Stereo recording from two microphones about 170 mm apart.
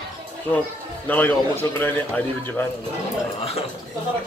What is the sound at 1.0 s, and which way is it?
Speech, 10° left (ahead or behind).